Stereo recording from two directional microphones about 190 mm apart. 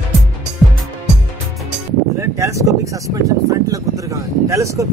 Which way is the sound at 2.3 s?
15° right (ahead or behind).